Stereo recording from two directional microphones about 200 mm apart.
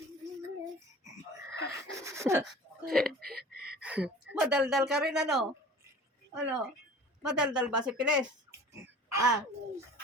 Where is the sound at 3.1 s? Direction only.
50° right (ahead or behind).